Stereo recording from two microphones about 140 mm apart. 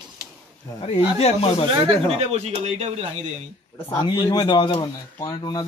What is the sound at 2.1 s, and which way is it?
Speech, 50° right (ahead or behind).